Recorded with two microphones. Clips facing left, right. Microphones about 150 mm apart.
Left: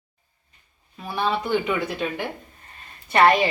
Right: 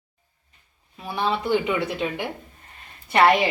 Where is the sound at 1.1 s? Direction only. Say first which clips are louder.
Right 1 dB; 20° right (ahead or behind).